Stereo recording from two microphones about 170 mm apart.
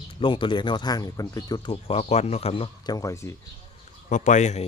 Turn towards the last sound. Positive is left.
turn(degrees=45)  # may be behind; listen again after turning